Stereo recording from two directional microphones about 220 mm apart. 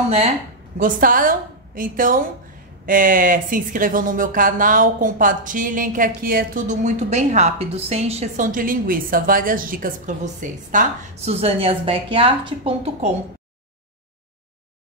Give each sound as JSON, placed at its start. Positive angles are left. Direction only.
{"t": 0.7, "sound": "speech", "side_deg": -35}